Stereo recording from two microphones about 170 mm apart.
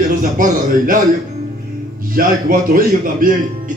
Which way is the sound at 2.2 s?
55° right (ahead or behind).